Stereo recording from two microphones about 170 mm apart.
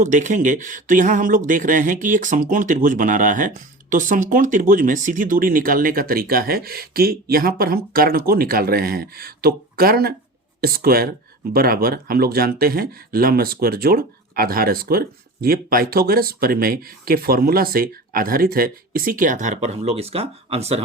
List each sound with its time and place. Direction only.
0.0 s speech: 45° right (ahead or behind)